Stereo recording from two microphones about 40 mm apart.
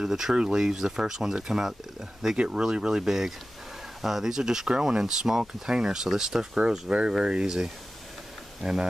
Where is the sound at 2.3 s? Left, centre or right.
Right.